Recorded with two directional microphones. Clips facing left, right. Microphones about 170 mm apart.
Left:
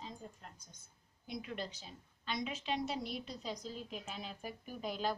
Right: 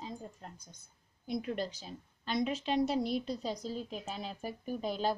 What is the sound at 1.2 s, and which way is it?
A woman's voice, 40° right (ahead or behind).